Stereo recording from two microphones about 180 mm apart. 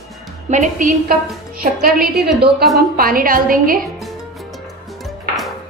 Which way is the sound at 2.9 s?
55° right (ahead or behind).